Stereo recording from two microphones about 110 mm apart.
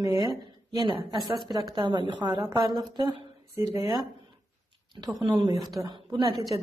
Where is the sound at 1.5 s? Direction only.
40° right (ahead or behind).